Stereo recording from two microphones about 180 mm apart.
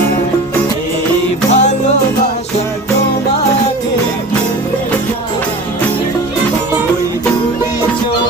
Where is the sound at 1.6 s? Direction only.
40° left (ahead or behind).